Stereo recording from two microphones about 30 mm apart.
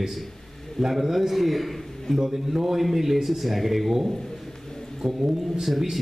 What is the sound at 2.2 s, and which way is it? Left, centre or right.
A man's voice, centre.